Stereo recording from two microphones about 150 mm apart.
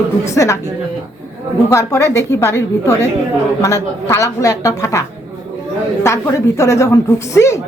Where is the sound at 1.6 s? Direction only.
20° left (ahead or behind).